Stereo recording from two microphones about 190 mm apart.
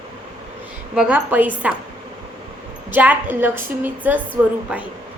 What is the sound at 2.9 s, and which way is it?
A woman's voice, 10° right (ahead or behind).